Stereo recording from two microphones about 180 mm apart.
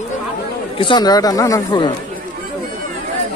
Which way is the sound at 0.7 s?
25° left (ahead or behind).